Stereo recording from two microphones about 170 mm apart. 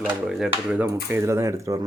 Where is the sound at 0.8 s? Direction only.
15° right (ahead or behind).